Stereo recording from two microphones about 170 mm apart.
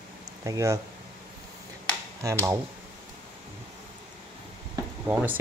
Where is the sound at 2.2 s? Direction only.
15° right (ahead or behind).